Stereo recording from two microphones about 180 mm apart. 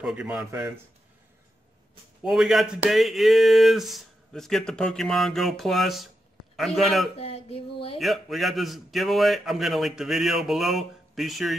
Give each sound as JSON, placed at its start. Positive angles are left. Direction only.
{"t": 0.0, "sound": "speech", "side_deg": -5}
{"t": 2.2, "sound": "speech", "side_deg": -5}
{"t": 7.2, "sound": "a sound", "side_deg": 35}
{"t": 8.0, "sound": "speech", "side_deg": 0}